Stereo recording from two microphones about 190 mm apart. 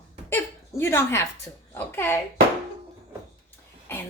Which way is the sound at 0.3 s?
10° left (ahead or behind).